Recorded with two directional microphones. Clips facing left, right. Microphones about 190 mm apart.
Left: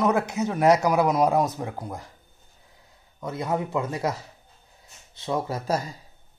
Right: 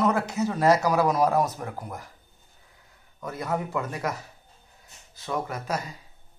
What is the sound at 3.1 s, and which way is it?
A man's voice, 25° left (ahead or behind).